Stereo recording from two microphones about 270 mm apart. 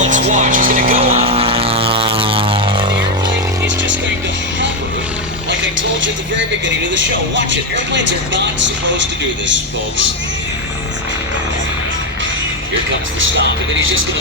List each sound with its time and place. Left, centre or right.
0.0 s vehicle: right
6.0 s speech: right